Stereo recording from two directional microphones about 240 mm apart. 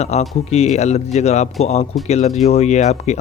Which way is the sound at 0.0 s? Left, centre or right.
Left.